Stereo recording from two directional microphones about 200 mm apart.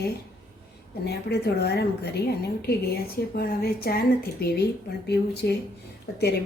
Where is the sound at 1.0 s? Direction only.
55° left (ahead or behind).